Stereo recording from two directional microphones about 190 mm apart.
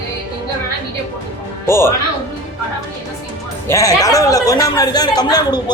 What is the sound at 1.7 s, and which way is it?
Speech, 15° left (ahead or behind).